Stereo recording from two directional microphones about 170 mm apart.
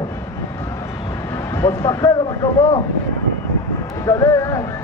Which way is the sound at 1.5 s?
15° left (ahead or behind).